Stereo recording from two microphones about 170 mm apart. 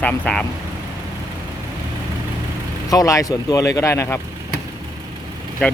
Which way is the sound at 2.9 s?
20° left (ahead or behind).